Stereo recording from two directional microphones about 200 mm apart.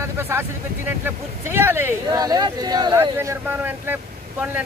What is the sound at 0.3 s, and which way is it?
Speech, 10° right (ahead or behind).